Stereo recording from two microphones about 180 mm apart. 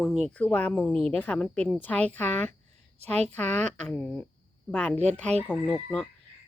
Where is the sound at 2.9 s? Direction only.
35° right (ahead or behind).